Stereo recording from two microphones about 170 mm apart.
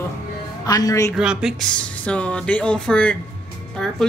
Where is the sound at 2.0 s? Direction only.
5° left (ahead or behind).